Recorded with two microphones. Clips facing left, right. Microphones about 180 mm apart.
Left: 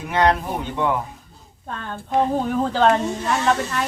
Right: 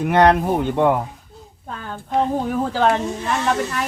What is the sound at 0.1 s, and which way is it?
Speech, 55° right (ahead or behind).